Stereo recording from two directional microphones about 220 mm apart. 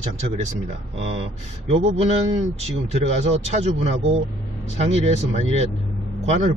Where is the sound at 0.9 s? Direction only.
25° right (ahead or behind).